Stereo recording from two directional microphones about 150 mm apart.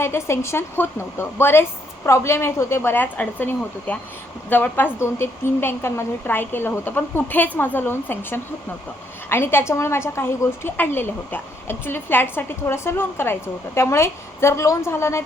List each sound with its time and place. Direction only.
0.0 s a woman's voice: 15° left (ahead or behind)